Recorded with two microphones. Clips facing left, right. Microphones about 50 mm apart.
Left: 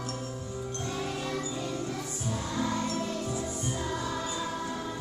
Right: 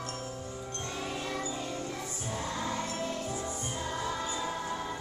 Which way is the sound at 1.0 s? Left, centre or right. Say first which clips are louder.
Left 2 dB; centre.